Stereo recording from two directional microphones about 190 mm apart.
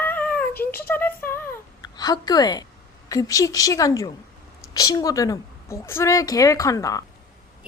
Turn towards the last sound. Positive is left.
turn(degrees=20)  # may be behind; listen again after turning